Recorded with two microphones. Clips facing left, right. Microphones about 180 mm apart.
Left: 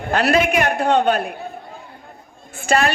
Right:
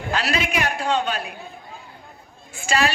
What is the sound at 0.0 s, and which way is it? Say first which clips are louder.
A woman's voice: left 7 dB; 55° left (ahead or behind).